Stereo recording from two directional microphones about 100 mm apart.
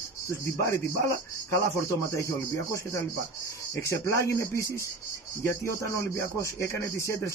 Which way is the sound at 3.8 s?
30° left (ahead or behind).